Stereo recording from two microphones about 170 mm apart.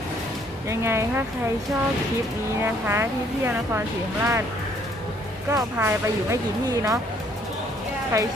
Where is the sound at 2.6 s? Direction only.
15° right (ahead or behind).